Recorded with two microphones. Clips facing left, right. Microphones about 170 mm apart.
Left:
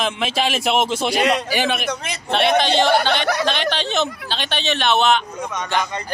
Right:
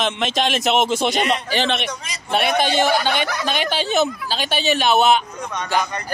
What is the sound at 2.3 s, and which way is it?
Speech, 10° right (ahead or behind).